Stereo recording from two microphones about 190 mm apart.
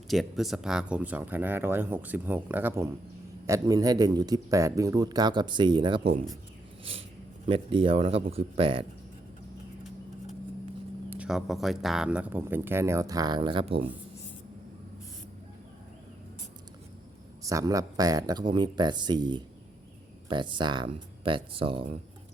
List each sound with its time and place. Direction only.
0.1 s a man's voice: centre (ahead or behind); by 6.0 s 25° right (ahead or behind)
7.4 s a man's voice: 30° right (ahead or behind)
11.1 s speech: 5° right (ahead or behind); by 13.8 s 30° right (ahead or behind)
17.4 s a man's voice: 15° right (ahead or behind)